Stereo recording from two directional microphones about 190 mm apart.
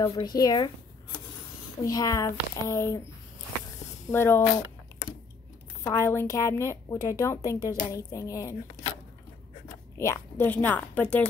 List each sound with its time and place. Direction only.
0.0 s speech: 25° left (ahead or behind)
1.8 s a woman's voice: 20° left (ahead or behind)
4.1 s a woman's voice: 10° left (ahead or behind)
5.9 s a woman's voice: 15° left (ahead or behind)
9.9 s a woman's voice: 15° left (ahead or behind)